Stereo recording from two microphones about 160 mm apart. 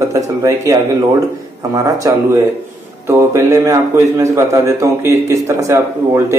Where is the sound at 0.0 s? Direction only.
20° right (ahead or behind).